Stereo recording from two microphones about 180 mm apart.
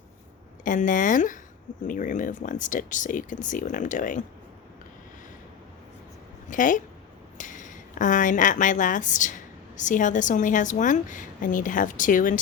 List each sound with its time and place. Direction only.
0.6 s speech: 45° left (ahead or behind)
6.5 s speech: 45° left (ahead or behind)